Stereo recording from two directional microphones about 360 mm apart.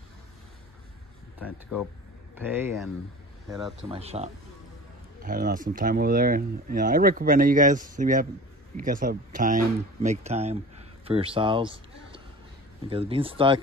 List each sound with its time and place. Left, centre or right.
2.3 s speech: centre
3.9 s speech: centre